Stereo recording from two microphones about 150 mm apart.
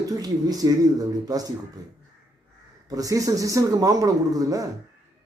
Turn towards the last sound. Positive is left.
turn(degrees=-25)  # may be behind; listen again after turning